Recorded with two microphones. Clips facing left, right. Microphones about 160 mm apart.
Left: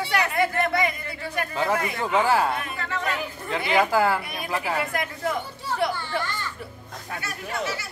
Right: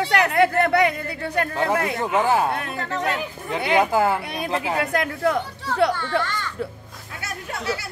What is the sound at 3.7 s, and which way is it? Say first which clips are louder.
A woman's voice: right 2 dB; 20° right (ahead or behind).